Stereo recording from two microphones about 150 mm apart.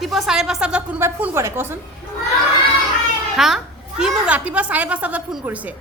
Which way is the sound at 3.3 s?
Centre (ahead or behind).